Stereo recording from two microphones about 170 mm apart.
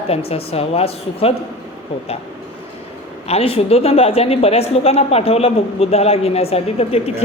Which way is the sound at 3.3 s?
35° left (ahead or behind).